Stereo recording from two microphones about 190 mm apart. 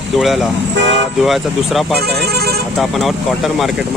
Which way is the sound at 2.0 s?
55° right (ahead or behind).